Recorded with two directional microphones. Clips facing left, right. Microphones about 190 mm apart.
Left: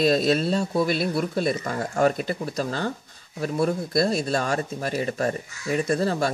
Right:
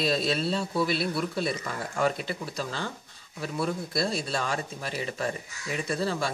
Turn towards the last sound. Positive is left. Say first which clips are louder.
# left 6 dB
turn(degrees=45)  # may be behind; listen again after turning